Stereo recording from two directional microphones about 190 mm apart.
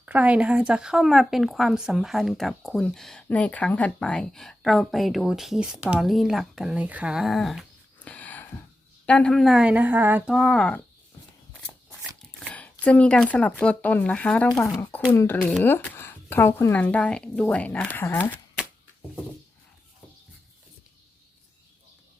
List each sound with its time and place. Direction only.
0.0 s speech: 5° right (ahead or behind)
12.2 s dog: 5° left (ahead or behind)
12.8 s speech: 5° left (ahead or behind)